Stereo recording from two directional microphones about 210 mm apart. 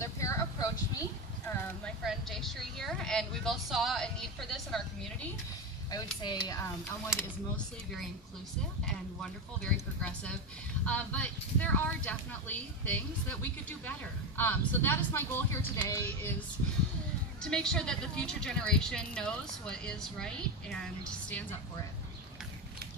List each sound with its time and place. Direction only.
0.0 s a sound: 15° left (ahead or behind)
2.0 s a woman's voice: centre (ahead or behind)
5.9 s speech: 20° left (ahead or behind)
7.2 s a woman's voice: 5° left (ahead or behind)